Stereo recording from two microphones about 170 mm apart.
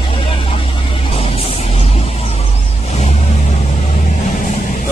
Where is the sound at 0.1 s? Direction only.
30° left (ahead or behind).